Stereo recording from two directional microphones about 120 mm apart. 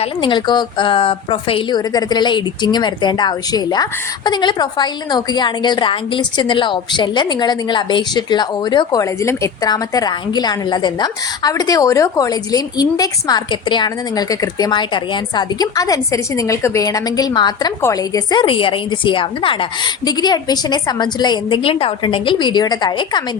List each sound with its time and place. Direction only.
0.0 s a woman's voice: 45° left (ahead or behind)
1.9 s a woman's voice: 35° left (ahead or behind)
21.6 s a woman's voice: 50° left (ahead or behind)